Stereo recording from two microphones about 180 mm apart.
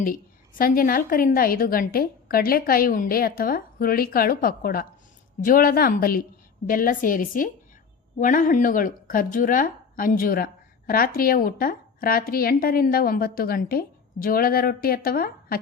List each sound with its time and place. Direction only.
0.0 s speech: 50° left (ahead or behind)